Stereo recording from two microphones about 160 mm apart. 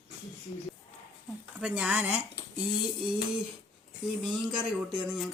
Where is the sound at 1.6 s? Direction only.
5° right (ahead or behind).